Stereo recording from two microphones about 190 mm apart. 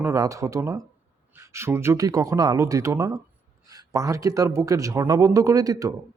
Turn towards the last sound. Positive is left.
turn(degrees=-20)  # may be behind; listen again after turning